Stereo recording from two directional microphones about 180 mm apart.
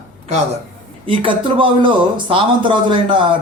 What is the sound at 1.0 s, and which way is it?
Speech, 30° right (ahead or behind).